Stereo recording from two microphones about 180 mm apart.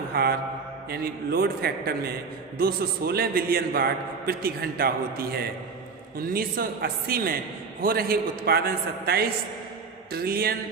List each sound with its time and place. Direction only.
0.1 s mantra: 60° right (ahead or behind)
0.9 s a man's voice: 60° right (ahead or behind)